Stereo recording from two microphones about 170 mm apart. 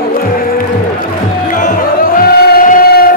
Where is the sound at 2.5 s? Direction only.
60° left (ahead or behind).